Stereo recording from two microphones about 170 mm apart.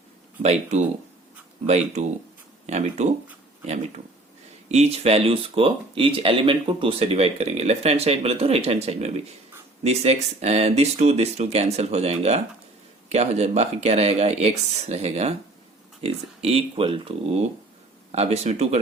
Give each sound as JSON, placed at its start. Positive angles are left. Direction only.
{"t": 0.4, "sound": "speech", "side_deg": -40}
{"t": 4.7, "sound": "speech", "side_deg": -40}